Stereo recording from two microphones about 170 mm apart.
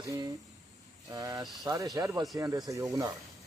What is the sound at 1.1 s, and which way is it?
Speech, 20° right (ahead or behind).